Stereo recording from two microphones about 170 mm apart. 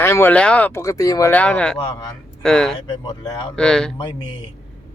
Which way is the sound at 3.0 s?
20° left (ahead or behind).